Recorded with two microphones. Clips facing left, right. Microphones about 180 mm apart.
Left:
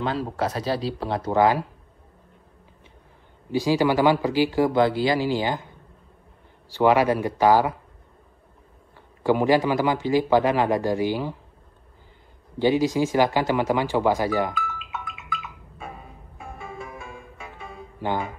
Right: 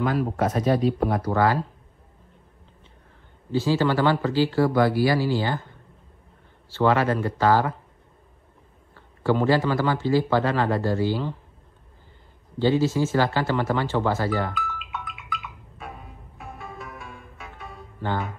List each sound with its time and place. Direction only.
0.4 s speech: 30° left (ahead or behind)
3.5 s speech: 15° left (ahead or behind)
6.7 s speech: 15° left (ahead or behind)
9.2 s speech: 15° left (ahead or behind)
12.5 s speech: 15° left (ahead or behind)
18.0 s speech: 15° left (ahead or behind)